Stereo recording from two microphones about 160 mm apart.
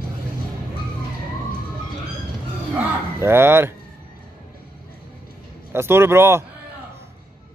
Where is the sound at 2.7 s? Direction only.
15° right (ahead or behind).